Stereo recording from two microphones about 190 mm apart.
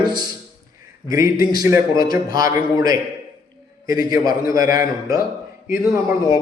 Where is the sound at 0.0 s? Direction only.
25° right (ahead or behind).